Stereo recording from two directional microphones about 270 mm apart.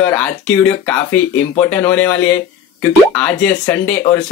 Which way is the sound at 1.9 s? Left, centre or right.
Centre.